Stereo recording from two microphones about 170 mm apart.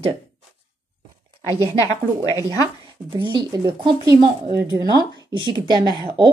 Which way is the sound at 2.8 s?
30° right (ahead or behind).